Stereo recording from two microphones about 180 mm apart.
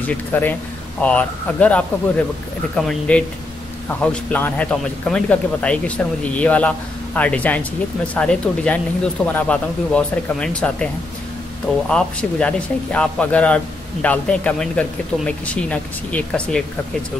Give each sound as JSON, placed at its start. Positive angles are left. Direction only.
{"t": 0.0, "sound": "speech", "side_deg": 10}
{"t": 11.9, "sound": "speech", "side_deg": 5}